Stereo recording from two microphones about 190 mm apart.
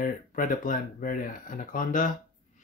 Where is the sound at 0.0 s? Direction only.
45° left (ahead or behind).